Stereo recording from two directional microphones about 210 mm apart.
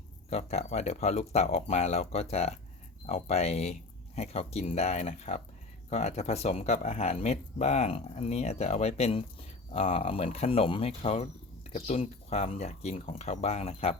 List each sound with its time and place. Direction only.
0.3 s speech: 30° left (ahead or behind)